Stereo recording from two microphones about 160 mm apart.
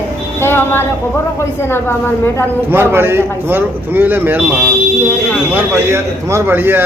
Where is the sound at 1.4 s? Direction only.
15° left (ahead or behind).